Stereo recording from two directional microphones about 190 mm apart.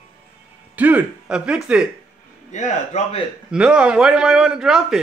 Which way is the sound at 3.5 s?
5° right (ahead or behind).